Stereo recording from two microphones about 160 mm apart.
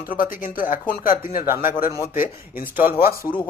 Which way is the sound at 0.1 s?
60° left (ahead or behind).